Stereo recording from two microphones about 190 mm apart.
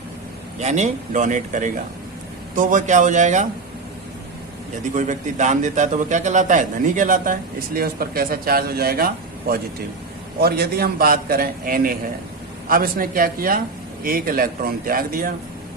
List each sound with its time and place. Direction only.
0.6 s speech: 40° right (ahead or behind)
4.9 s a man's voice: 40° right (ahead or behind)